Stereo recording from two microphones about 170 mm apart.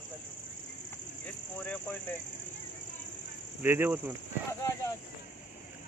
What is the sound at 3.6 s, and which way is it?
Speech, 15° right (ahead or behind).